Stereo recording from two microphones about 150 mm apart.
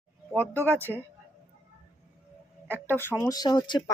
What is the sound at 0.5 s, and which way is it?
Speech, 15° right (ahead or behind).